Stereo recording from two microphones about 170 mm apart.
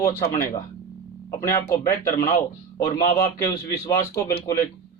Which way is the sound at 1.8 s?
60° left (ahead or behind).